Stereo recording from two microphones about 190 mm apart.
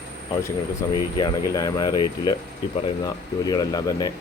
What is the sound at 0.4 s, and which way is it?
Speech, 20° left (ahead or behind).